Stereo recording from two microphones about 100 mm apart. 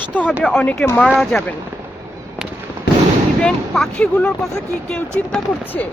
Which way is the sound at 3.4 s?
5° left (ahead or behind).